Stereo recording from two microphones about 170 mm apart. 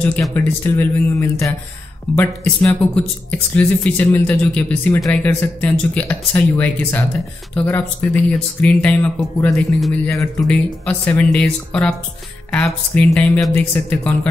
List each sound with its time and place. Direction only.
0.0 s speech: 10° left (ahead or behind)